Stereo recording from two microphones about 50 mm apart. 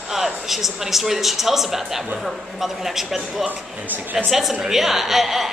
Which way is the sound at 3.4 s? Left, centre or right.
Right.